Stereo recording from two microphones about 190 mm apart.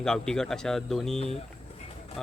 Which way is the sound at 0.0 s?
5° left (ahead or behind).